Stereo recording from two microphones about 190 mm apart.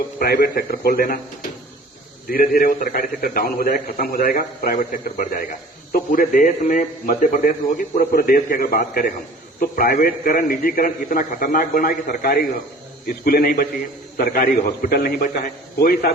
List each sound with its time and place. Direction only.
0.2 s a man's voice: 55° left (ahead or behind)
2.3 s a man's voice: 50° left (ahead or behind)